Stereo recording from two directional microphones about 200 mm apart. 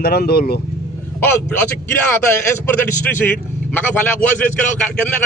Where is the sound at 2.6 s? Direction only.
10° left (ahead or behind).